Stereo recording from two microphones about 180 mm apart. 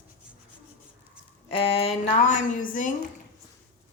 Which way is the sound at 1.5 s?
30° left (ahead or behind).